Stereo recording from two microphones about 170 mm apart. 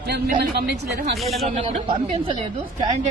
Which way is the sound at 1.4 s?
40° right (ahead or behind).